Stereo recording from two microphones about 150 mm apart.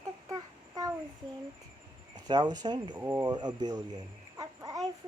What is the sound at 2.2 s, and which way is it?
Speech, 30° right (ahead or behind).